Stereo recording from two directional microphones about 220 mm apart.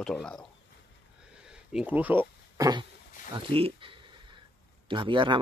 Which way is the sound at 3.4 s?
25° right (ahead or behind).